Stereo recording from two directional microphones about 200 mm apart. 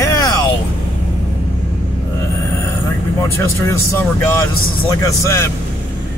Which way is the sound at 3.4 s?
15° left (ahead or behind).